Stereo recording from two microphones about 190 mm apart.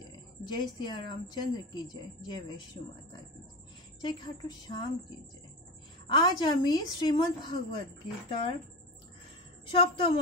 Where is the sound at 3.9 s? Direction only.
25° left (ahead or behind).